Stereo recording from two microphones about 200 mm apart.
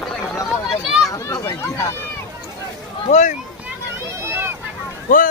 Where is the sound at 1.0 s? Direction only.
15° left (ahead or behind).